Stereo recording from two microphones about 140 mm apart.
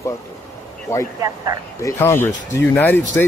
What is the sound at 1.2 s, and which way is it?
Speech, 25° right (ahead or behind).